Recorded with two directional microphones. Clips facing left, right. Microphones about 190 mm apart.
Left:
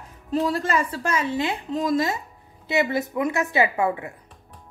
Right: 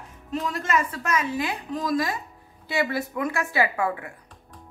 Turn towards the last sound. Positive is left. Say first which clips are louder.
# left 3 dB
turn(degrees=25)  # may be behind; listen again after turning